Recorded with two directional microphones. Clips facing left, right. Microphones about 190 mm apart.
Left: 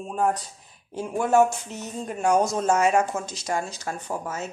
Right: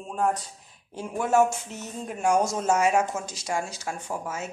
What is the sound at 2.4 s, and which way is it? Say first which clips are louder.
Speech: left 2 dB; 10° right (ahead or behind).